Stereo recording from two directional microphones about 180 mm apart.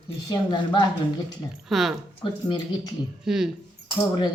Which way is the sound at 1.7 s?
Centre (ahead or behind).